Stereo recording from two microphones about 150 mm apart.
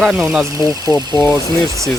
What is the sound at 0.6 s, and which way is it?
Speech, 25° left (ahead or behind).